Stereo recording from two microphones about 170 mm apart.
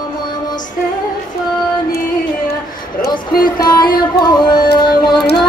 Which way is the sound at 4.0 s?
25° left (ahead or behind).